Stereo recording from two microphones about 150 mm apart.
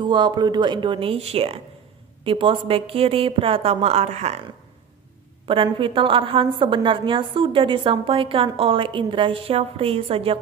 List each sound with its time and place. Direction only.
0.0 s a woman's voice: 30° right (ahead or behind); by 4.4 s 45° right (ahead or behind)
5.5 s a woman's voice: 35° right (ahead or behind)